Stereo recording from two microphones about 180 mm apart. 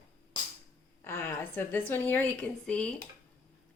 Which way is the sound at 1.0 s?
15° left (ahead or behind).